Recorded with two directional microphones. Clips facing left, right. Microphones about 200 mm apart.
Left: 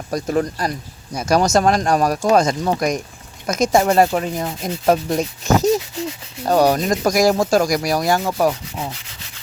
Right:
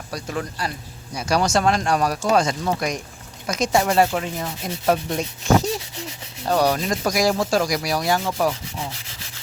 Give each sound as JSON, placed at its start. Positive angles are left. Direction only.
{"t": 0.1, "sound": "speech", "side_deg": 45}